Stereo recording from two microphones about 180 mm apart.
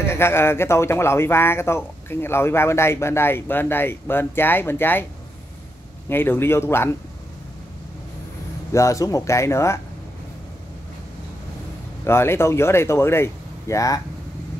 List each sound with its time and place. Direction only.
0.1 s speech: 15° left (ahead or behind)
6.0 s speech: 10° left (ahead or behind)
8.7 s speech: 15° left (ahead or behind)
12.0 s speech: 15° left (ahead or behind)